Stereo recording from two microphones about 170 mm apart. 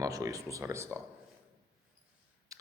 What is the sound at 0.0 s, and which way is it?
Speech, 20° right (ahead or behind).